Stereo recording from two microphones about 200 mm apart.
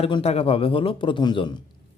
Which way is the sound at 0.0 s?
30° left (ahead or behind).